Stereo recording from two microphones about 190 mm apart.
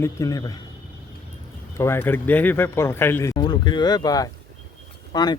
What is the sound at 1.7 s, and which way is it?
Speech, 10° left (ahead or behind).